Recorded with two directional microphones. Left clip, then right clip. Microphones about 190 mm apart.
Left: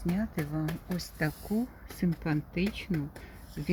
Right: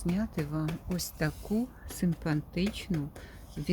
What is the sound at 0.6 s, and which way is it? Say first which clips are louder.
Speech: even; 45° left (ahead or behind).